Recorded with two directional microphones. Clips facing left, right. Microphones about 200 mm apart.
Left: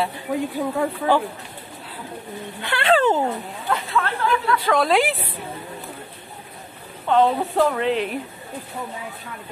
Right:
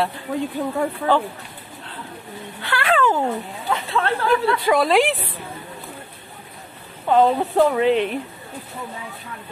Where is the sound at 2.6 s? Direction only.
25° left (ahead or behind).